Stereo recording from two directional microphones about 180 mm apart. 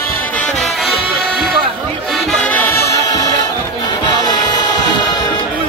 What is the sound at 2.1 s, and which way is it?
Music, 5° left (ahead or behind).